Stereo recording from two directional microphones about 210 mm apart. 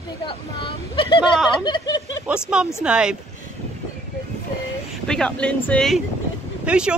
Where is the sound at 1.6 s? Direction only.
20° left (ahead or behind).